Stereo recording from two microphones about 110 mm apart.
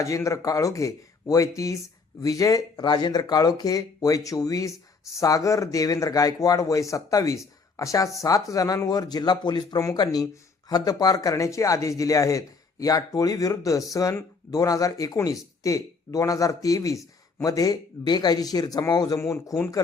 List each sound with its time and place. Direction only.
0.0 s a man's voice: 30° left (ahead or behind)